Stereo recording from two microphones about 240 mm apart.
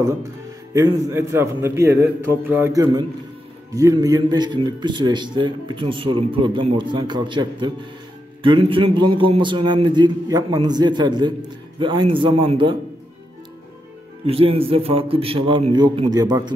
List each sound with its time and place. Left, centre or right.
0.7 s a man's voice: centre
14.2 s a man's voice: right